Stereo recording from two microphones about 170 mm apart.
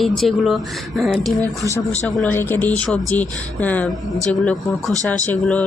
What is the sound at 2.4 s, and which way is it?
A woman's voice, 10° left (ahead or behind).